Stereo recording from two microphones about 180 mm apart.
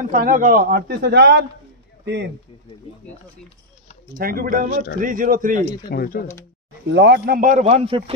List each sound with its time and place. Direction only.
0.1 s a man's voice: 50° right (ahead or behind); by 2.3 s 70° right (ahead or behind)
4.2 s a man's voice: 55° right (ahead or behind)
5.9 s speech: 55° left (ahead or behind)
6.9 s speech: 75° right (ahead or behind)
7.3 s a man's voice: 45° right (ahead or behind)